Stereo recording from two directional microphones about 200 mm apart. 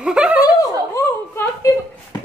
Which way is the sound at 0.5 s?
15° left (ahead or behind).